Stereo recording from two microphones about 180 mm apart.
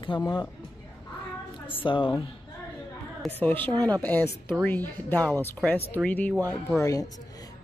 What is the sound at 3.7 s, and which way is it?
Speech, 20° right (ahead or behind).